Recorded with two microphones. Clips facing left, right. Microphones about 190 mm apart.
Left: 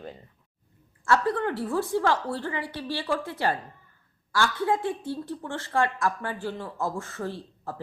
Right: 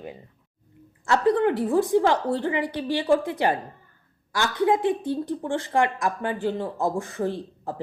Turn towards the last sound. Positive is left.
turn(degrees=-15)  # may be behind; listen again after turning